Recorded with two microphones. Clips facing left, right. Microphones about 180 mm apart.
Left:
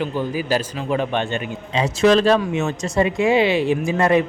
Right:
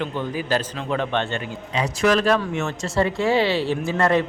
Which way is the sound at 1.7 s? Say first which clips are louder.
Left 4 dB; 25° left (ahead or behind).